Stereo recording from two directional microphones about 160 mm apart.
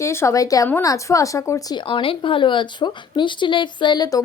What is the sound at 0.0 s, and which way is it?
Speech, 15° left (ahead or behind).